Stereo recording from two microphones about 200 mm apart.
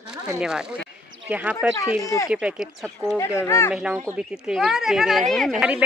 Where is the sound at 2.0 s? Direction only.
15° left (ahead or behind).